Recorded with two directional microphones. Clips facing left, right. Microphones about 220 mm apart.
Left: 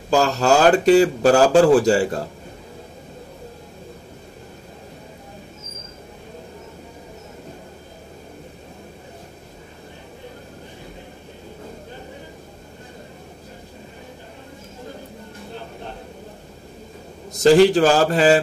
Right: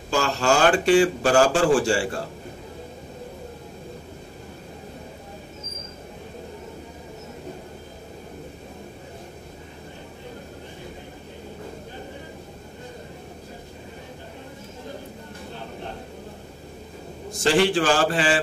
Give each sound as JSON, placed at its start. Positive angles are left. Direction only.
{"t": 0.1, "sound": "speech", "side_deg": 40}
{"t": 17.3, "sound": "speech", "side_deg": 40}